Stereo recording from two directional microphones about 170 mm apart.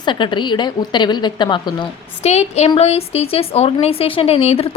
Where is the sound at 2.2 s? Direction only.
40° left (ahead or behind).